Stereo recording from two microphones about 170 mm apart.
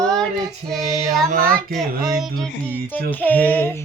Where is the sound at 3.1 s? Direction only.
10° left (ahead or behind).